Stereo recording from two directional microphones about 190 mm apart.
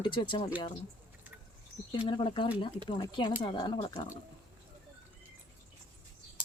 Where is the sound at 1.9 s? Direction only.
30° left (ahead or behind).